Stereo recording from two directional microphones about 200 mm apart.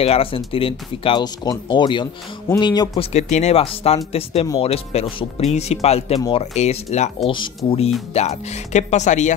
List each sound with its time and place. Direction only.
0.0 s speech: 30° left (ahead or behind)
3.1 s speech: 35° left (ahead or behind)